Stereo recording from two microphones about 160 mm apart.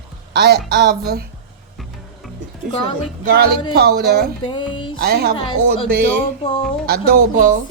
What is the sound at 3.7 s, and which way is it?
Speech, 85° right.